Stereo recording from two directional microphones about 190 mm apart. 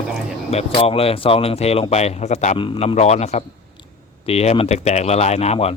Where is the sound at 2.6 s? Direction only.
25° left (ahead or behind).